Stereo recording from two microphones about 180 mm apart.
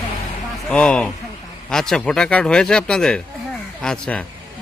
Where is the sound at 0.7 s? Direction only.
5° left (ahead or behind).